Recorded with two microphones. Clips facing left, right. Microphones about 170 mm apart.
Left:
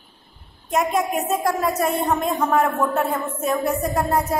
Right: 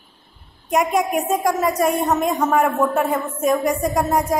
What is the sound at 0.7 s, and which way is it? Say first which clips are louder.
A woman's voice: right 2 dB; 5° right (ahead or behind).